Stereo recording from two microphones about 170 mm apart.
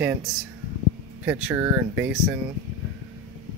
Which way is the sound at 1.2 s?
10° right (ahead or behind).